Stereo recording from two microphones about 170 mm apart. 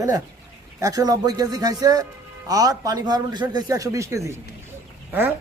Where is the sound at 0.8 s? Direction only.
20° right (ahead or behind).